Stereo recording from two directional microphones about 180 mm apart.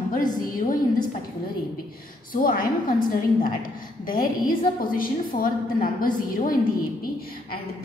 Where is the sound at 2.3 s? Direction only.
55° left (ahead or behind).